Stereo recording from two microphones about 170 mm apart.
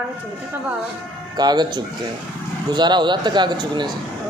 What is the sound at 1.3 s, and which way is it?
Speech, 25° right (ahead or behind).